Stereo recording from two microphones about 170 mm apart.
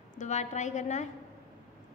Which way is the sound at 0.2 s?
45° left (ahead or behind).